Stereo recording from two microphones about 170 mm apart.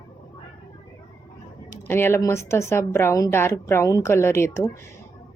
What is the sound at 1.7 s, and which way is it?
Speech, 15° left (ahead or behind).